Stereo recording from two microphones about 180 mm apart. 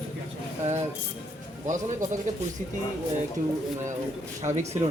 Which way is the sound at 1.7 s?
45° right (ahead or behind).